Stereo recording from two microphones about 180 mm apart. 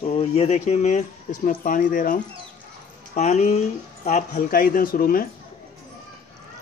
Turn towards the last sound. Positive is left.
turn(degrees=55)  # may be behind; listen again after turning